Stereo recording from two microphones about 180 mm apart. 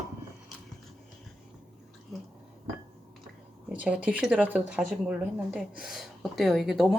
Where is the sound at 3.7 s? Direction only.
10° right (ahead or behind).